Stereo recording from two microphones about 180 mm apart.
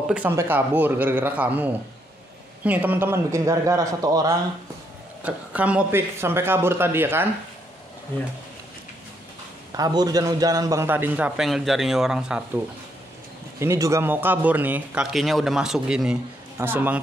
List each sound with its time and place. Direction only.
0.1 s a man's voice: 10° right (ahead or behind)
5.2 s a man's voice: 10° right (ahead or behind)
9.8 s a man's voice: 20° right (ahead or behind); by 12.4 s 5° right (ahead or behind)
13.6 s a man's voice: 15° right (ahead or behind)